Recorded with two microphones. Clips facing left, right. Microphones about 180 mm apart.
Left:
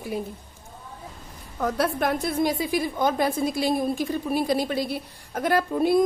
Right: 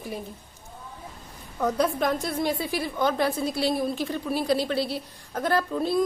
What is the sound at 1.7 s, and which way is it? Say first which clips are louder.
Speech: even; 75° left (ahead or behind).